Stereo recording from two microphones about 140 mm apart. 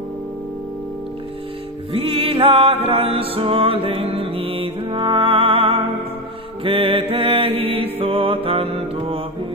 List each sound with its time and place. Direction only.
1.9 s music: 40° right (ahead or behind)
6.6 s mantra: 40° right (ahead or behind)